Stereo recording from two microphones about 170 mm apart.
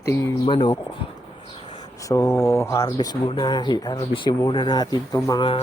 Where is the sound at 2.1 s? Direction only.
20° left (ahead or behind).